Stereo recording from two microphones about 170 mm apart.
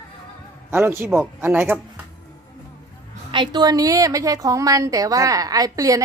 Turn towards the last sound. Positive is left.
turn(degrees=-20)  # may be behind; listen again after turning